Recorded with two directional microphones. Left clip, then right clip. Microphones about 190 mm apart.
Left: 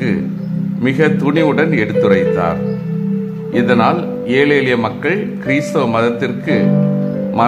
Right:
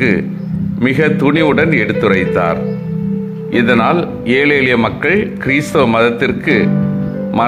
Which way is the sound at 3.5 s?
20° right (ahead or behind).